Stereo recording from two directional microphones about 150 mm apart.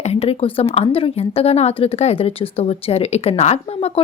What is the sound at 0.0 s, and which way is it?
Speech, 45° left (ahead or behind).